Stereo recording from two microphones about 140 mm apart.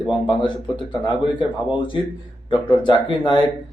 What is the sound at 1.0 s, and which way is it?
Speech, 35° left (ahead or behind).